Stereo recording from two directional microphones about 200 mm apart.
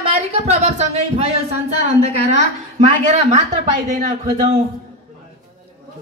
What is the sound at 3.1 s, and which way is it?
A woman's voice, 35° right (ahead or behind).